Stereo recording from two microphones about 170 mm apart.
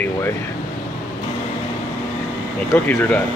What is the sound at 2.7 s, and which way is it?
Speech, 10° left (ahead or behind).